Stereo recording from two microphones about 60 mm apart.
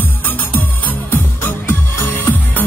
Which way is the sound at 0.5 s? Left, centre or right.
Left.